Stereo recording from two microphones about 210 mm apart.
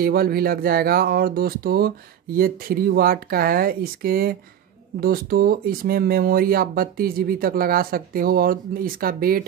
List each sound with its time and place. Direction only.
0.0 s speech: 45° right (ahead or behind)